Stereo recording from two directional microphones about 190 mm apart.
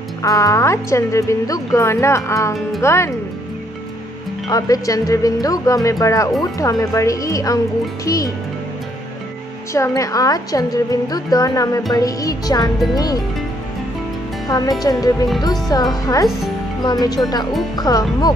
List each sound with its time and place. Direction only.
0.2 s a woman's voice: 15° left (ahead or behind)
4.5 s a woman's voice: 20° left (ahead or behind)
9.8 s a woman's voice: 15° left (ahead or behind)
14.5 s a woman's voice: 20° left (ahead or behind)